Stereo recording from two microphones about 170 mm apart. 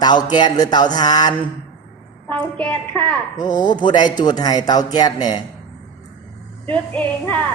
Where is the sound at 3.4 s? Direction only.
25° left (ahead or behind).